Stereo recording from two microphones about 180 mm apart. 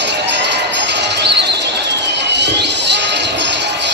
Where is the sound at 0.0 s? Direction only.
75° right (ahead or behind).